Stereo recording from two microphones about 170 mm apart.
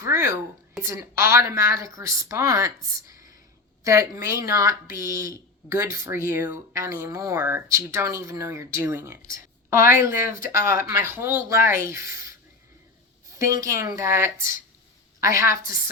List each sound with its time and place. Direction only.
0.0 s speech: 15° right (ahead or behind)
13.3 s a woman's voice: 20° right (ahead or behind)